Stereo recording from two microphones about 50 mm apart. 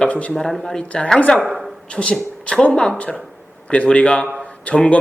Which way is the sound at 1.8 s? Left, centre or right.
Left.